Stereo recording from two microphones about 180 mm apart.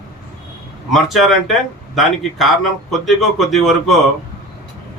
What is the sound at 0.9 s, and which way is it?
Speech, centre (ahead or behind).